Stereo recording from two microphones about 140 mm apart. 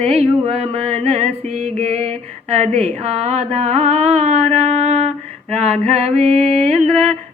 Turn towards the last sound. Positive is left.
turn(degrees=-45)  # may be behind; listen again after turning